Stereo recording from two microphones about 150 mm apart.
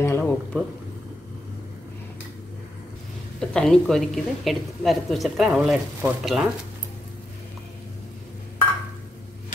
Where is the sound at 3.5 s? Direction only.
5° left (ahead or behind).